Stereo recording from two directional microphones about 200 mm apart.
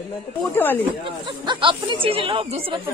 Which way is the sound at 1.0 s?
25° right (ahead or behind).